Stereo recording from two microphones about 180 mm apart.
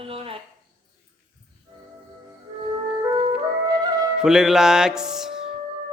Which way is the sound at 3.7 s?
20° right (ahead or behind).